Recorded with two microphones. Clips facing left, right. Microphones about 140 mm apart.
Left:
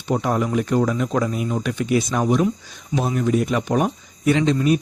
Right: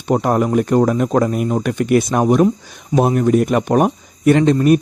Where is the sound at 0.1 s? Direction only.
50° right (ahead or behind).